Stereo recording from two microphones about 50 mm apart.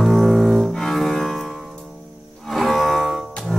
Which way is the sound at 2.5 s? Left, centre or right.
Centre.